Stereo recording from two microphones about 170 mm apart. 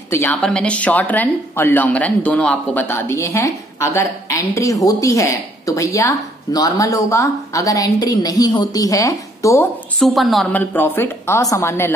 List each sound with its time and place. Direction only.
0.1 s speech: 10° left (ahead or behind)
9.9 s speech: centre (ahead or behind)